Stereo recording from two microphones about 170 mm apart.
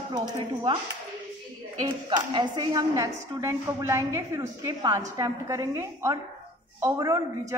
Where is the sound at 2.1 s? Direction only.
25° right (ahead or behind).